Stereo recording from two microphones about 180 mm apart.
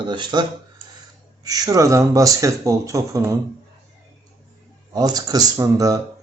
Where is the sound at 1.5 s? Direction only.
20° right (ahead or behind).